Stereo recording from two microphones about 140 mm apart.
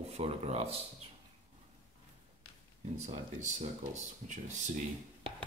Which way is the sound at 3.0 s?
55° right (ahead or behind).